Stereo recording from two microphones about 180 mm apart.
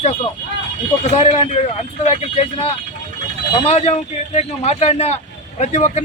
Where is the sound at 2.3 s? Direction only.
35° left (ahead or behind).